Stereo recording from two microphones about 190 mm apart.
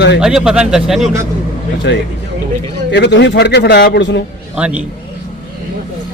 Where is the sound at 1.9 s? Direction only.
65° left (ahead or behind).